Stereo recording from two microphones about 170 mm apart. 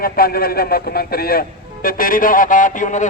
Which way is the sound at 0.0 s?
60° left (ahead or behind).